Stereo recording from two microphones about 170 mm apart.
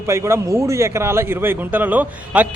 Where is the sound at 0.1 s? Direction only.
15° right (ahead or behind).